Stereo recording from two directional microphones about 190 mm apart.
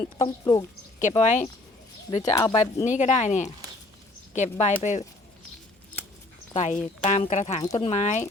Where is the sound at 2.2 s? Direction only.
20° left (ahead or behind).